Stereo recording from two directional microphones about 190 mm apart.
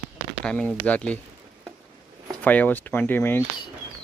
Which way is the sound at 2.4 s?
10° left (ahead or behind).